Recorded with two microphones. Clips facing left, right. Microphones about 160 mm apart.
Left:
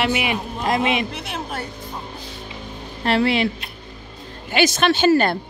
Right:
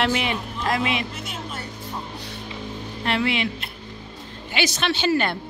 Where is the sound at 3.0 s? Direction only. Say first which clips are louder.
Left 5 dB; 35° left (ahead or behind).